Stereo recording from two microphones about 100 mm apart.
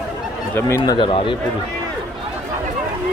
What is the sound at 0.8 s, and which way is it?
Speech, 45° left (ahead or behind).